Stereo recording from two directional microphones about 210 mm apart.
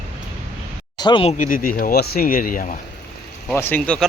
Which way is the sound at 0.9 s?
20° left (ahead or behind).